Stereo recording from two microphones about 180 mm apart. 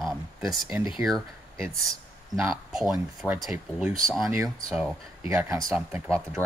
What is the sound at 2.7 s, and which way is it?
Speech, 5° right (ahead or behind).